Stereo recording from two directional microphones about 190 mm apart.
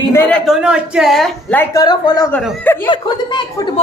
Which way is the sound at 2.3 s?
10° left (ahead or behind).